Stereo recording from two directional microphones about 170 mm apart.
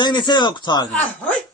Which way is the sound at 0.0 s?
25° left (ahead or behind).